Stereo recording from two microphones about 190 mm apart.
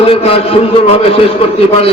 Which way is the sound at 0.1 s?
30° left (ahead or behind).